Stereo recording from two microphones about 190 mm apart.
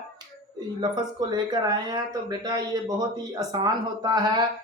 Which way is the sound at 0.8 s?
20° right (ahead or behind).